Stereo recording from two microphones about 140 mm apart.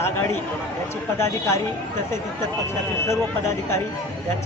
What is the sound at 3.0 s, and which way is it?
Speech, 20° left (ahead or behind).